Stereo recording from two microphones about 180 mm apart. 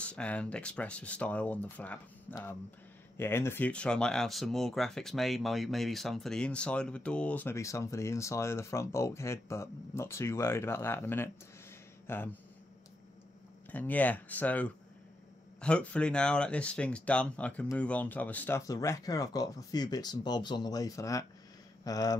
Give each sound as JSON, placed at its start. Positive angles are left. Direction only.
{"t": 0.0, "sound": "speech", "side_deg": 5}
{"t": 13.7, "sound": "speech", "side_deg": 10}